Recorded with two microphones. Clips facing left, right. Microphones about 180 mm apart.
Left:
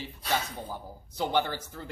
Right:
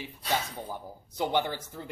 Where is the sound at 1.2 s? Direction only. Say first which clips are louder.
Even; 15° right (ahead or behind).